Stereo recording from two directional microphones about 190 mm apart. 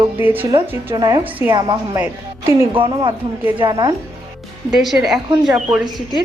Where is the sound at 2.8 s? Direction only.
25° right (ahead or behind).